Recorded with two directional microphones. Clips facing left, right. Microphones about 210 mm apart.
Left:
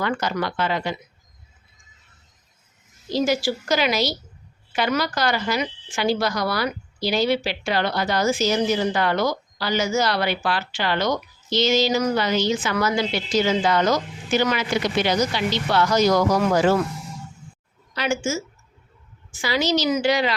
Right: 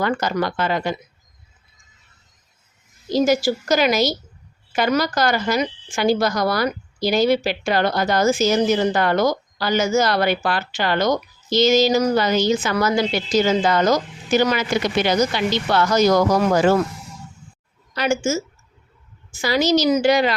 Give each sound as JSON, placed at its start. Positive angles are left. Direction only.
{"t": 0.0, "sound": "speech", "side_deg": -45}
{"t": 3.1, "sound": "speech", "side_deg": -45}
{"t": 15.3, "sound": "speech", "side_deg": -55}
{"t": 17.9, "sound": "speech", "side_deg": -45}